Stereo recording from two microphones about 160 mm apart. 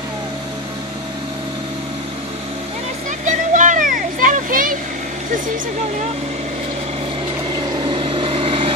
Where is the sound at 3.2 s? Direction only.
50° right (ahead or behind).